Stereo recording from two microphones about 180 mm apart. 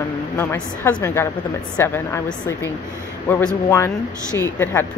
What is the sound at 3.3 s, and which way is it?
Speech, 5° left (ahead or behind).